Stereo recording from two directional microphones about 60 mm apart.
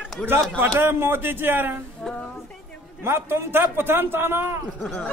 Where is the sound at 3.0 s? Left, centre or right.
Right.